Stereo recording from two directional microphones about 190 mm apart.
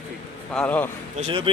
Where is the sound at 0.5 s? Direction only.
10° left (ahead or behind).